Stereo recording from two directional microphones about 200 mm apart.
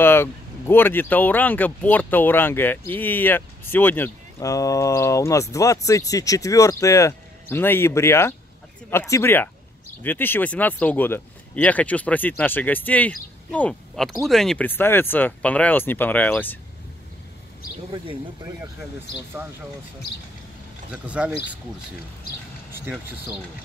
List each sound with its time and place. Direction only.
0.0 s speech: 10° left (ahead or behind)
17.9 s speech: 20° right (ahead or behind)
20.9 s speech: 5° right (ahead or behind)
22.7 s speech: 10° right (ahead or behind)